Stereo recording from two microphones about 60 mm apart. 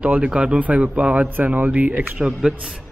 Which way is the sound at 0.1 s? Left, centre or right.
Centre.